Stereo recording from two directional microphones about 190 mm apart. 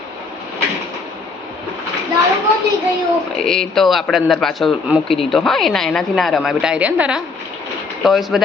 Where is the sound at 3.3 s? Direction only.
5° left (ahead or behind).